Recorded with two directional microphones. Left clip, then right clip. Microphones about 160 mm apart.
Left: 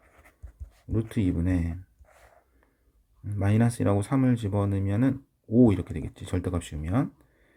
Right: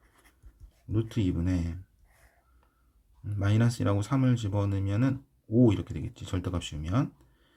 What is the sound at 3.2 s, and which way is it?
Speech, 35° left (ahead or behind).